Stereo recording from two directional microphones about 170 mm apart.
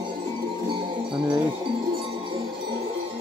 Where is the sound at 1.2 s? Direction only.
20° right (ahead or behind).